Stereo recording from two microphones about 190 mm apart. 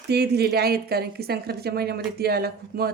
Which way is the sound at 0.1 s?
60° right (ahead or behind).